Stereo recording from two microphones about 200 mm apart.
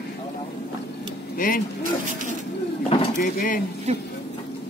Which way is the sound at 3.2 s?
40° left (ahead or behind).